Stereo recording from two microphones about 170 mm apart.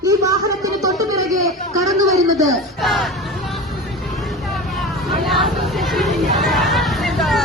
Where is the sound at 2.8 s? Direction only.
Centre (ahead or behind).